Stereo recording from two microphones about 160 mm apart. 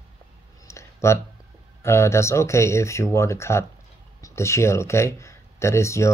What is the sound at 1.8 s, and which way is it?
Speech, 15° left (ahead or behind).